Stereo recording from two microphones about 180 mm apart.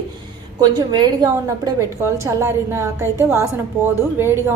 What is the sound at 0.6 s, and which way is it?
A woman's voice, 25° right (ahead or behind).